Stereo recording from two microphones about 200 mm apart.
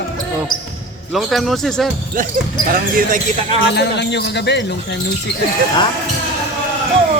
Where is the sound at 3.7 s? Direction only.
60° left (ahead or behind).